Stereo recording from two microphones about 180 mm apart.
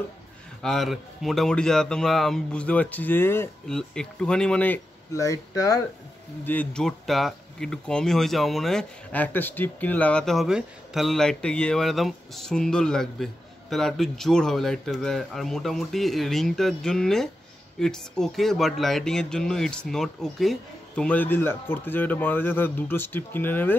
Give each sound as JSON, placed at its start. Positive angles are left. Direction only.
{"t": 0.6, "sound": "speech", "side_deg": 0}